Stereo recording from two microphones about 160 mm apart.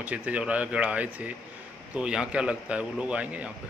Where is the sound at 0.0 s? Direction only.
10° right (ahead or behind).